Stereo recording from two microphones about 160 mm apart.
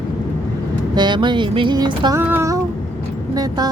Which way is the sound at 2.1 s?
15° right (ahead or behind).